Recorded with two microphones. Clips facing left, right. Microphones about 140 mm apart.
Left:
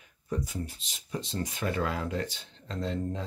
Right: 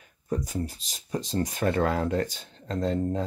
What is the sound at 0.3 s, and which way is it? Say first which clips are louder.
Speech: right 4 dB; 40° right (ahead or behind).